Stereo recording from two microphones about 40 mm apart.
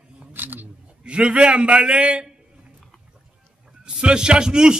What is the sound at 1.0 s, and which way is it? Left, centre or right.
A man's voice, right.